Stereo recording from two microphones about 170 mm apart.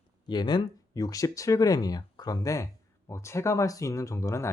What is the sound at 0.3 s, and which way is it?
Speech, 25° left (ahead or behind).